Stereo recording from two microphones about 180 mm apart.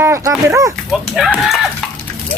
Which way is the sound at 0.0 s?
15° right (ahead or behind).